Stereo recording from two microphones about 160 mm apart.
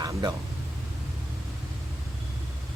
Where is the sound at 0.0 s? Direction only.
25° right (ahead or behind).